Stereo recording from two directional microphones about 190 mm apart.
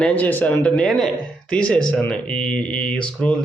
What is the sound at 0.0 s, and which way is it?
Speech, 10° left (ahead or behind).